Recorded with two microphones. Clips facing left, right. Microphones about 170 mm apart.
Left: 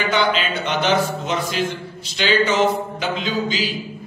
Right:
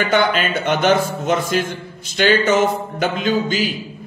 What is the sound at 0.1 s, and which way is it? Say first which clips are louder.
A man's voice: right 2 dB; 50° right (ahead or behind).